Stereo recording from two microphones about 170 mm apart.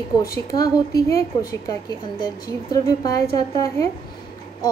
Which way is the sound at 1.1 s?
20° left (ahead or behind).